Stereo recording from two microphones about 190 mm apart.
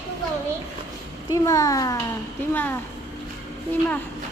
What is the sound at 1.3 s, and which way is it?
A woman's voice, 15° left (ahead or behind).